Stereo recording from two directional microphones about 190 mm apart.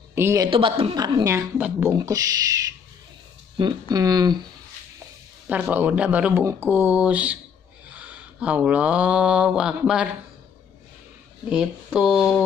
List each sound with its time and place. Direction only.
0.1 s a man's voice: 15° right (ahead or behind)
0.5 s a woman's voice: 30° right (ahead or behind)
5.5 s speech: 10° right (ahead or behind)
11.4 s speech: 5° right (ahead or behind)